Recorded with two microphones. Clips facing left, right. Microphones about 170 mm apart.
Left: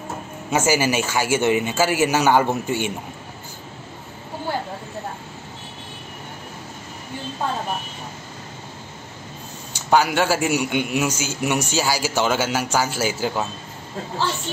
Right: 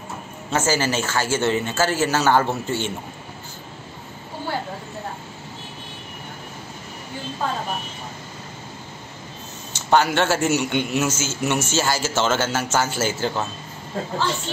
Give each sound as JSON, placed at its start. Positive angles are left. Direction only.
{"t": 0.5, "sound": "a man's voice", "side_deg": 10}
{"t": 9.8, "sound": "a man's voice", "side_deg": 10}